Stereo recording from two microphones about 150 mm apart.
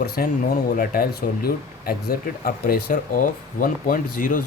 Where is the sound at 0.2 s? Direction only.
75° left (ahead or behind).